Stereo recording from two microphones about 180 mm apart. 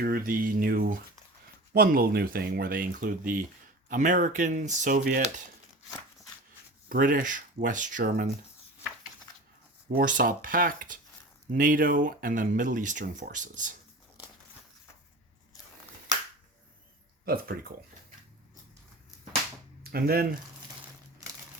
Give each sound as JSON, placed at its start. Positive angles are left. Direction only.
{"t": 0.0, "sound": "speech", "side_deg": -55}
{"t": 6.8, "sound": "speech", "side_deg": -50}
{"t": 9.9, "sound": "speech", "side_deg": -50}
{"t": 17.2, "sound": "speech", "side_deg": -55}
{"t": 19.8, "sound": "speech", "side_deg": -55}